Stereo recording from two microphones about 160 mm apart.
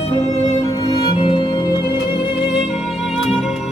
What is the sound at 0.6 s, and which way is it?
Music, 25° left (ahead or behind).